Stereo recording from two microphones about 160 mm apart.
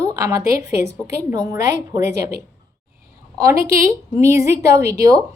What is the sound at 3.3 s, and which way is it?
A woman's voice, 20° right (ahead or behind).